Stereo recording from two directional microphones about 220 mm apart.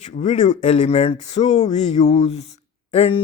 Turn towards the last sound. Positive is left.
turn(degrees=25)  # may be behind; listen again after turning